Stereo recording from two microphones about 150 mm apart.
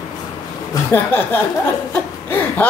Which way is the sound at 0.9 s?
15° left (ahead or behind).